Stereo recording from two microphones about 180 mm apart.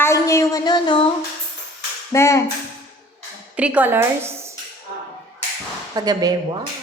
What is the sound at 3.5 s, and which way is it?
Speech, 5° right (ahead or behind).